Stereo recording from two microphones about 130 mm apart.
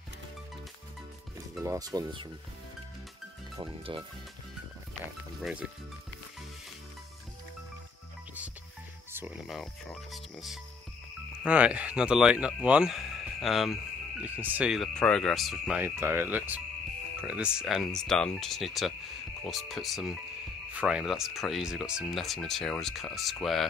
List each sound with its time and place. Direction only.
1.6 s speech: 25° right (ahead or behind)
3.9 s speech: 40° right (ahead or behind)
5.4 s speech: 5° right (ahead or behind)
9.5 s speech: centre (ahead or behind)
14.2 s speech: 10° right (ahead or behind)
15.0 s speech: 5° left (ahead or behind)
15.8 s speech: 20° right (ahead or behind); by 23.7 s centre (ahead or behind)